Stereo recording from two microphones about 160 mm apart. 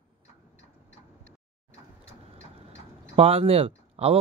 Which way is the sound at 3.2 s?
40° right (ahead or behind).